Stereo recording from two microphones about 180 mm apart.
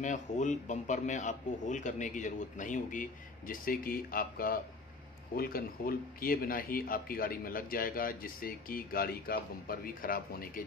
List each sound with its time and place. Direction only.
0.0 s speech: 45° left (ahead or behind)